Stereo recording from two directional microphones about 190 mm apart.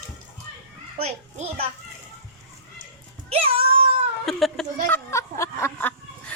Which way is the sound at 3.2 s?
30° right (ahead or behind).